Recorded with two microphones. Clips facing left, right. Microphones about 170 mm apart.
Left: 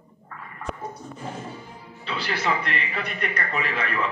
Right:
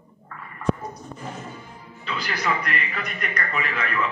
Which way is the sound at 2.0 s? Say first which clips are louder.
Even; 30° left (ahead or behind).